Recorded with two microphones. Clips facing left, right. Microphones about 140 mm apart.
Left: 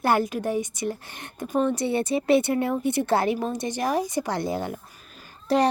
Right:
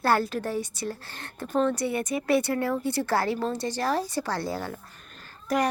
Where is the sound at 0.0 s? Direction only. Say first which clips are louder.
Left 2 dB; 15° left (ahead or behind).